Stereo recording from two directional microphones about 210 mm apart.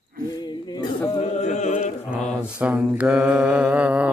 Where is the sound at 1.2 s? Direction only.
35° left (ahead or behind).